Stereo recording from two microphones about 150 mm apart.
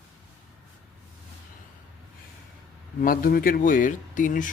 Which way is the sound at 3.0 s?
70° left (ahead or behind).